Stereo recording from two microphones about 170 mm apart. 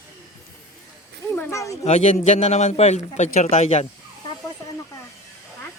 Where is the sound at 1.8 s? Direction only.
40° left (ahead or behind).